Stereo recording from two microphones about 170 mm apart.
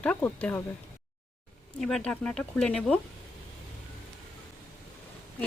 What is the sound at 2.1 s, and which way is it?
Speech, 5° left (ahead or behind).